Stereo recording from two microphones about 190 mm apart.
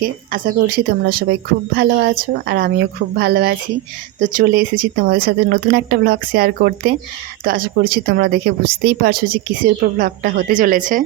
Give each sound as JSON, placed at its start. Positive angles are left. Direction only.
{"t": 0.0, "sound": "a woman's voice", "side_deg": -50}